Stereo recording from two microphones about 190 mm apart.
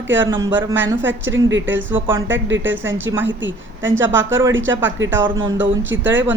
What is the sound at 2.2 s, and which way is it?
A woman's voice, 75° right (ahead or behind).